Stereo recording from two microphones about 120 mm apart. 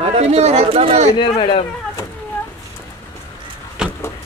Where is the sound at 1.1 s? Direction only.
45° left (ahead or behind).